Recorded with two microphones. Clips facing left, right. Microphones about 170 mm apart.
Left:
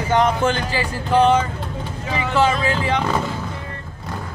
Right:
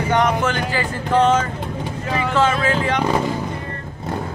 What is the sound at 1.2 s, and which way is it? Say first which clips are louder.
Speech: left 1 dB; 10° left (ahead or behind).